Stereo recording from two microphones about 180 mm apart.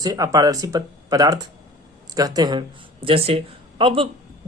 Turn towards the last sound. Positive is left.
turn(degrees=-30)  # may be behind; listen again after turning